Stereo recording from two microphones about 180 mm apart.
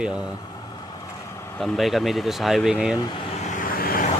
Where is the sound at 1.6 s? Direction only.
Centre (ahead or behind).